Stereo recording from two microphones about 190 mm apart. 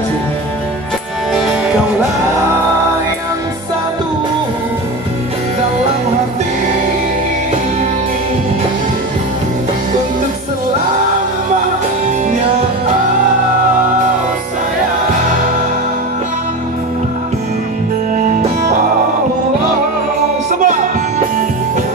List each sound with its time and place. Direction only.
1.3 s music: centre (ahead or behind)
18.2 s music: 40° right (ahead or behind)
20.6 s music: 40° right (ahead or behind)